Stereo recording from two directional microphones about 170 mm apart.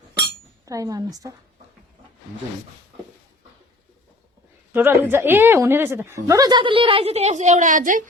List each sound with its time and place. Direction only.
0.2 s chink: 20° right (ahead or behind)
4.7 s a woman's voice: 10° right (ahead or behind); by 8.0 s 50° right (ahead or behind)